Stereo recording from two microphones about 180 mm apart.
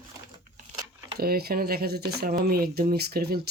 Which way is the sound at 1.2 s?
60° right (ahead or behind).